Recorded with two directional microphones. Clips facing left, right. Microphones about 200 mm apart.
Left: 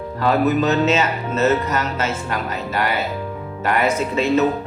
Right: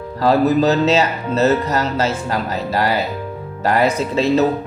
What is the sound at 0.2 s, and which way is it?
Music, 35° right (ahead or behind).